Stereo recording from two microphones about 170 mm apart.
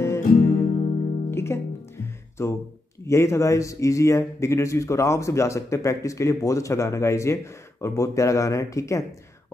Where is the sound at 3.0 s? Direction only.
15° left (ahead or behind).